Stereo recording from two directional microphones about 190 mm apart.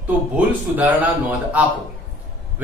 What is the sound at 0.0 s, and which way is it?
Speech, 10° right (ahead or behind).